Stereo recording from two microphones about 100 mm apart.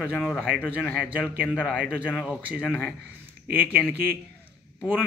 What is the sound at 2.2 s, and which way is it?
Speech, 10° right (ahead or behind).